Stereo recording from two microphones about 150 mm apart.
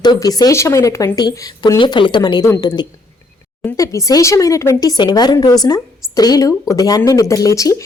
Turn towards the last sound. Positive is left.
turn(degrees=20)  # may be behind; listen again after turning